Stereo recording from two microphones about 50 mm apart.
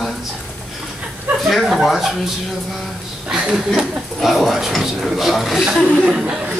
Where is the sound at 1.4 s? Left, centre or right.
Centre.